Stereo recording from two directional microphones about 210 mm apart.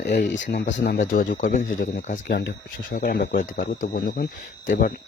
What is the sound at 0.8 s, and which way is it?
Speech, 50° left (ahead or behind).